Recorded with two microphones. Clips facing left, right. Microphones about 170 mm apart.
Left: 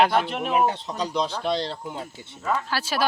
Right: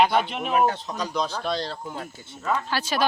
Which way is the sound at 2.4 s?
5° left (ahead or behind).